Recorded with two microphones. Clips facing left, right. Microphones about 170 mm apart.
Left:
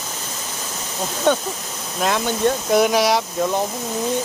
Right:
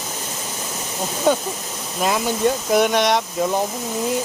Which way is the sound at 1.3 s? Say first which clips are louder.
Even; 5° right (ahead or behind).